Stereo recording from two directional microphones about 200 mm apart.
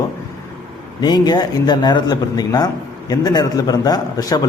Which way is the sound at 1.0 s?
20° left (ahead or behind).